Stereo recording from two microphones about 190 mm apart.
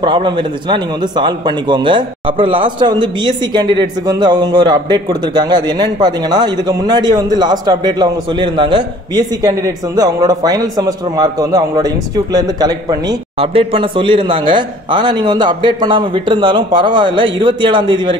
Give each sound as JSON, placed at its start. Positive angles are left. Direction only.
{"t": 0.0, "sound": "a man's voice", "side_deg": -25}